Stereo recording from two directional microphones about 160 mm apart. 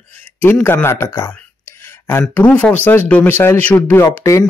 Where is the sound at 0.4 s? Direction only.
10° left (ahead or behind).